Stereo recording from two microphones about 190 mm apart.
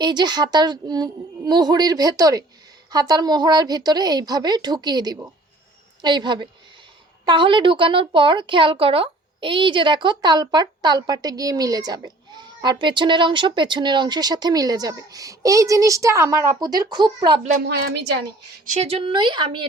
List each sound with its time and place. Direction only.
0.0 s speech: 25° right (ahead or behind)
17.7 s a woman's voice: 60° right (ahead or behind)
18.7 s speech: 35° right (ahead or behind)